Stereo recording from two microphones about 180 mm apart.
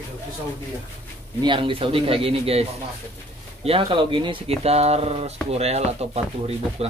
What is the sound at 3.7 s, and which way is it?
Speech, 30° right (ahead or behind).